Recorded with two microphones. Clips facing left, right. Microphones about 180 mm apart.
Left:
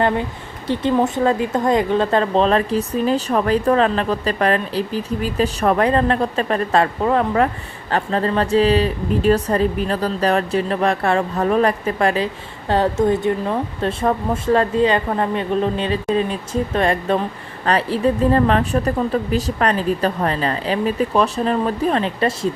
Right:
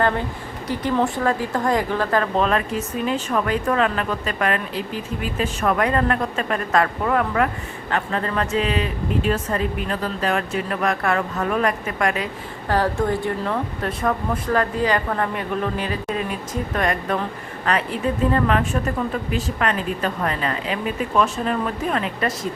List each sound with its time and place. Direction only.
0.7 s a woman's voice: 25° left (ahead or behind)